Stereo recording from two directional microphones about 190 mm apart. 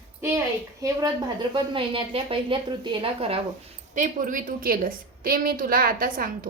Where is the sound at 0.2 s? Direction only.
15° right (ahead or behind).